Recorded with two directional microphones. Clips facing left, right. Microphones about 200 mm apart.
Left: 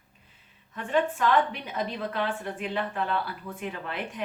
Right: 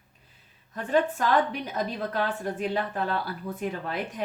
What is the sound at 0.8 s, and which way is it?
A woman's voice, 40° right (ahead or behind).